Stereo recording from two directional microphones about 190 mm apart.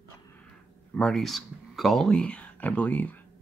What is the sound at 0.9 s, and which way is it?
Speech, 5° left (ahead or behind).